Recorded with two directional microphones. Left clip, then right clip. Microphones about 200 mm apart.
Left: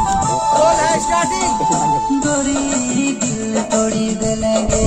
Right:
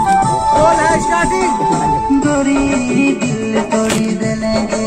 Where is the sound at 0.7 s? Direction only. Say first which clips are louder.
Right 2 dB; 65° left (ahead or behind).